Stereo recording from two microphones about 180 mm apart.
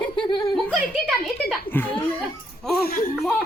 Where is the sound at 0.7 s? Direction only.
Centre (ahead or behind).